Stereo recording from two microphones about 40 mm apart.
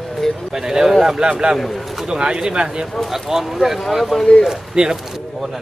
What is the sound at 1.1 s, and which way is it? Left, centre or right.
Speech, centre.